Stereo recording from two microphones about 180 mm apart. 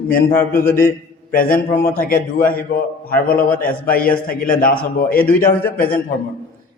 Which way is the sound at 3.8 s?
55° left (ahead or behind).